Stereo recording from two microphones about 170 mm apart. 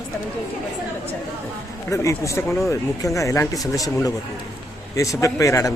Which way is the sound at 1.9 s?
20° left (ahead or behind).